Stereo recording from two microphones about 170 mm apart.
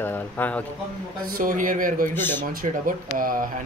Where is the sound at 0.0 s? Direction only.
10° left (ahead or behind).